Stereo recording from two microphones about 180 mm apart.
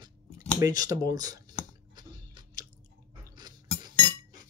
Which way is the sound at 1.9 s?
25° right (ahead or behind).